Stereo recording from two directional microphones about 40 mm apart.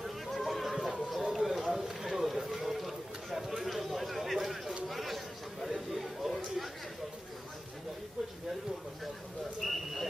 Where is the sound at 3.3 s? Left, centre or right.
Centre.